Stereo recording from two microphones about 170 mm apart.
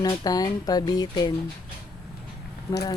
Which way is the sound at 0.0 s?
25° left (ahead or behind).